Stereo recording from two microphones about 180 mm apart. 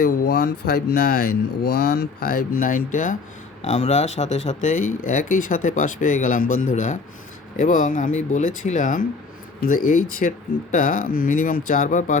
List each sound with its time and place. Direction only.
0.0 s speech: 60° left (ahead or behind)